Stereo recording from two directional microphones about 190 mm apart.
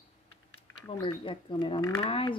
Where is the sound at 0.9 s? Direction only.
25° left (ahead or behind).